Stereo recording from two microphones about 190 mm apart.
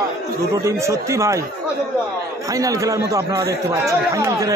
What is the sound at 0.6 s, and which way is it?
Speech, 15° right (ahead or behind).